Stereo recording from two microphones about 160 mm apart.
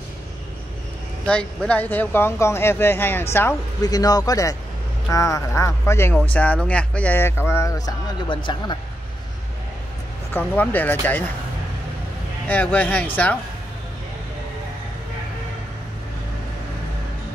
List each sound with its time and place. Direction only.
1.2 s speech: 5° left (ahead or behind); by 8.4 s 25° left (ahead or behind)
10.3 s speech: 10° left (ahead or behind)
12.4 s speech: 10° left (ahead or behind)